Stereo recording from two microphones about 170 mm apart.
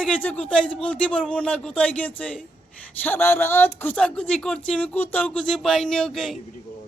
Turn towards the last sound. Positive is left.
turn(degrees=0)  # may be behind; listen again after turning